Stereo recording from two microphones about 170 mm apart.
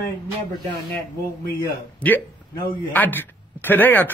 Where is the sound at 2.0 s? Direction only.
5° left (ahead or behind).